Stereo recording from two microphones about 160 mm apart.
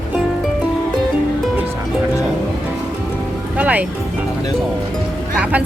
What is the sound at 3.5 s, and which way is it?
Music, 10° right (ahead or behind).